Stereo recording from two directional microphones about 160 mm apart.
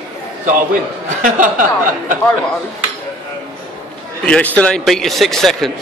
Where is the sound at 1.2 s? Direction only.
55° right (ahead or behind).